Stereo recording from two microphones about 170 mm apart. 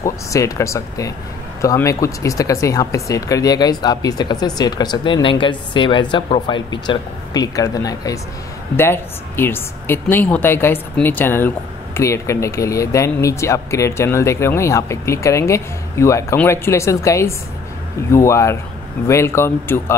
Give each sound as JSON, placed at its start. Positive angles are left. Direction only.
{"t": 0.0, "sound": "a woman's voice", "side_deg": 20}